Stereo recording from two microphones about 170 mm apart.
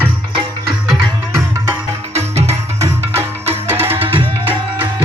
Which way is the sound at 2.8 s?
15° right (ahead or behind).